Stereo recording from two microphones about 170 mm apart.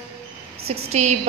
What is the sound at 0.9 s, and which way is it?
Speech, 40° right (ahead or behind).